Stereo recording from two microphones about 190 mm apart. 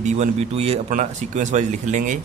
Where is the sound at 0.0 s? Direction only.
35° right (ahead or behind).